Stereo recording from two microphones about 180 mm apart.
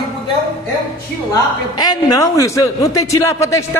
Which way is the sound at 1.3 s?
20° left (ahead or behind).